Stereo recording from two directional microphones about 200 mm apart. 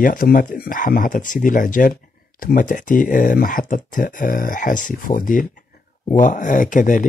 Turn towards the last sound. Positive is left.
turn(degrees=40)  # may be behind; listen again after turning